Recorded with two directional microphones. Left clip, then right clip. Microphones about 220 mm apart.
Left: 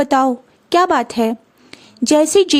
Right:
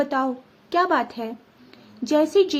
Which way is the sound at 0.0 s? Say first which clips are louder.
Left 9 dB; 50° left (ahead or behind).